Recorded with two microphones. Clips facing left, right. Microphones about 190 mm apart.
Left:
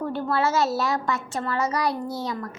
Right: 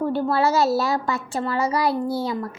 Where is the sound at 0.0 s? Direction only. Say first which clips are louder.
Right 4 dB; 30° right (ahead or behind).